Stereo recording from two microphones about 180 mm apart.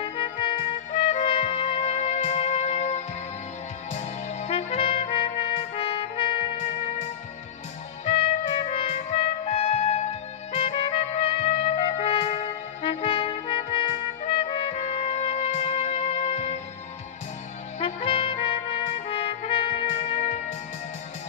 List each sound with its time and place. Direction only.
0.0 s music: 30° left (ahead or behind)
3.9 s trumpet: 35° left (ahead or behind)
8.0 s music: 35° left (ahead or behind)
12.8 s trumpet: 30° left (ahead or behind)
17.7 s trumpet: 30° left (ahead or behind)